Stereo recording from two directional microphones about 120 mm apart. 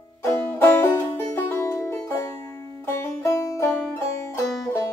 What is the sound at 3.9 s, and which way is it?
Banjo, 25° left (ahead or behind).